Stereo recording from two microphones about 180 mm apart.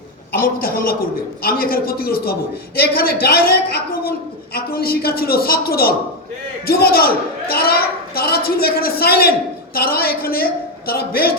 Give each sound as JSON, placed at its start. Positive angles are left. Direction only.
{"t": 0.3, "sound": "a man's voice", "side_deg": 55}